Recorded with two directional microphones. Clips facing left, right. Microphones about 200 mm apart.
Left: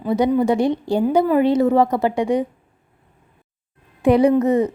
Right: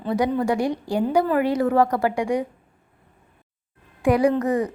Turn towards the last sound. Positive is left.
turn(degrees=25)  # may be behind; listen again after turning